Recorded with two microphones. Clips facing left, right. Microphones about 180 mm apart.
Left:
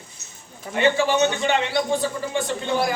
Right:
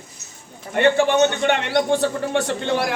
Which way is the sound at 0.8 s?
55° right (ahead or behind).